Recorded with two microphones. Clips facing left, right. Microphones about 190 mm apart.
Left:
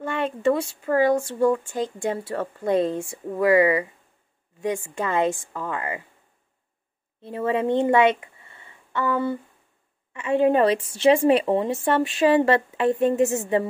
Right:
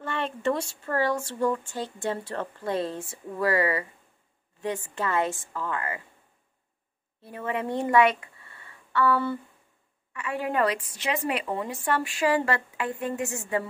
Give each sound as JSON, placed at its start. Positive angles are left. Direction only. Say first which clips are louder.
{"t": 0.0, "sound": "speech", "louder": "left 5 dB", "side_deg": 10}
{"t": 7.2, "sound": "a woman's voice", "louder": "left 7 dB", "side_deg": 25}